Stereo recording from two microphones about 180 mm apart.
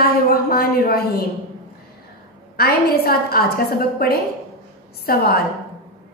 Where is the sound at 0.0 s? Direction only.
55° left (ahead or behind).